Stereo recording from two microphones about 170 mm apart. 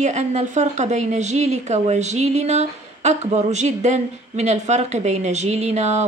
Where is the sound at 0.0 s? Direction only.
40° right (ahead or behind).